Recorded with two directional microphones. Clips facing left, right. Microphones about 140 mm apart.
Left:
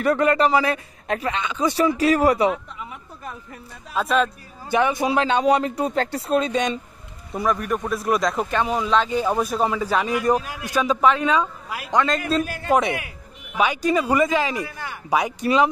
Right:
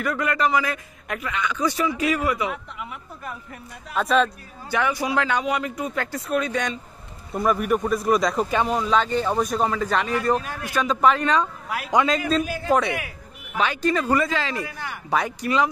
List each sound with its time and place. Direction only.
0.0 s a man's voice: 30° left (ahead or behind)
2.0 s speech: 35° left (ahead or behind)
3.9 s speech: centre (ahead or behind)
4.6 s a man's voice: 20° left (ahead or behind)
7.3 s a man's voice: 5° right (ahead or behind); by 15.7 s 20° left (ahead or behind)